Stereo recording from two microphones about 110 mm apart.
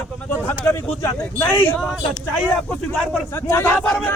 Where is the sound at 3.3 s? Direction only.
25° left (ahead or behind).